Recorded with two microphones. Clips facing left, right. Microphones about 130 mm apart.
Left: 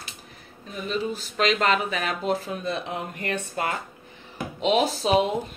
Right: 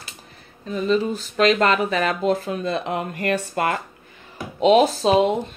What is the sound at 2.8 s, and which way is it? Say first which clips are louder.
Speech: right 7 dB; 65° right (ahead or behind).